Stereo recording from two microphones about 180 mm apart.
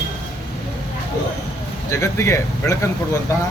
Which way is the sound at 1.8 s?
15° left (ahead or behind).